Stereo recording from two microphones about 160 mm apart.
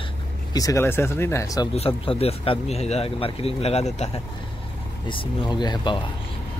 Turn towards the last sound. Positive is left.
turn(degrees=30)  # may be behind; listen again after turning